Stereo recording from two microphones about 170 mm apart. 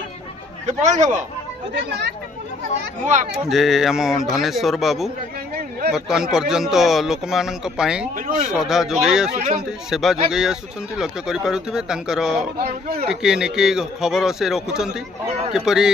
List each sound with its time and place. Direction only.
0.7 s speech: 45° right (ahead or behind)
1.7 s speech: 85° right
3.3 s speech: centre (ahead or behind)
5.5 s a sound: 60° right (ahead or behind)
5.9 s speech: 5° right (ahead or behind)
9.3 s speech: 45° right (ahead or behind)
9.8 s speech: centre (ahead or behind)